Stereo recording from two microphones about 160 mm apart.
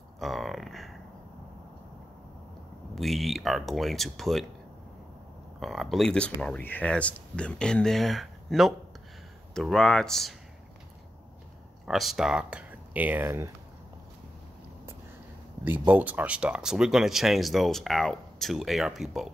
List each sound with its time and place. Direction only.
0.2 s speech: centre (ahead or behind)
2.9 s speech: centre (ahead or behind)
5.6 s speech: centre (ahead or behind)
11.8 s speech: centre (ahead or behind)
15.6 s speech: 10° right (ahead or behind)